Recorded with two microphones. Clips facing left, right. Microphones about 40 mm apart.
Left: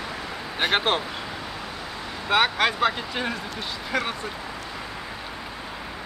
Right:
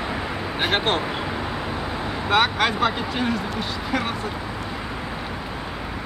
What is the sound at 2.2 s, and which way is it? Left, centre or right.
Speech, centre.